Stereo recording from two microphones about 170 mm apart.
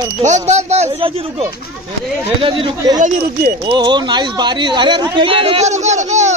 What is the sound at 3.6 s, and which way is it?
Speech, 25° right (ahead or behind).